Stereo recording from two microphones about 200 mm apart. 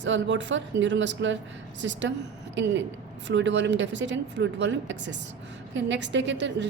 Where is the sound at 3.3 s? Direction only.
60° right (ahead or behind).